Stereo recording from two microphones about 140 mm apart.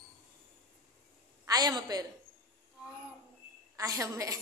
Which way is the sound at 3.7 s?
25° right (ahead or behind).